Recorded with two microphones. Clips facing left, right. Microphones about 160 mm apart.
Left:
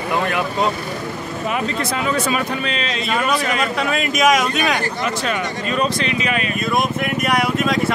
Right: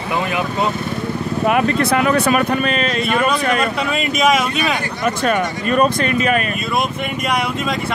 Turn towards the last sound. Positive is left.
turn(degrees=0)  # may be behind; listen again after turning